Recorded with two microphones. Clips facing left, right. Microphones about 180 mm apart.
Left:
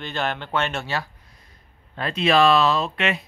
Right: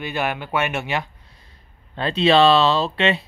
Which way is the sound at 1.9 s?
30° right (ahead or behind).